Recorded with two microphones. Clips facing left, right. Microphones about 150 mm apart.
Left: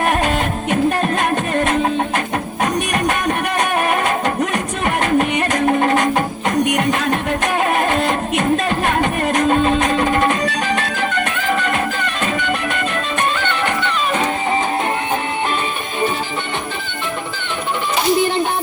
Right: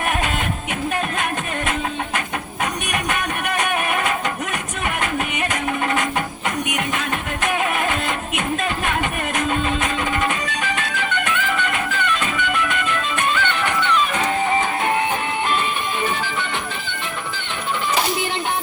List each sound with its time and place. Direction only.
0.0 s music: 40° left (ahead or behind)